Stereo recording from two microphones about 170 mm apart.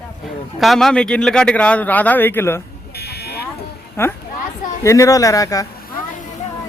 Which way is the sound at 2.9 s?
70° left (ahead or behind).